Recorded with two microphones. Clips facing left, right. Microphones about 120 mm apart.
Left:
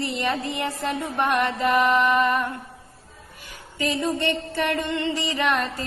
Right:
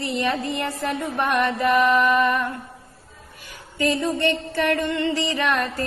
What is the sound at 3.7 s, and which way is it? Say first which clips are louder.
Music: right 2 dB; 20° left (ahead or behind).